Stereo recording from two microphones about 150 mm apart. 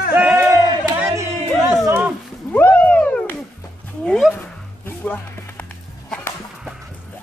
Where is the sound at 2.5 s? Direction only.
10° left (ahead or behind).